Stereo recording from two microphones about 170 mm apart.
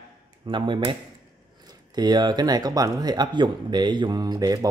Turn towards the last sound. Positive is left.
turn(degrees=-20)  # may be behind; listen again after turning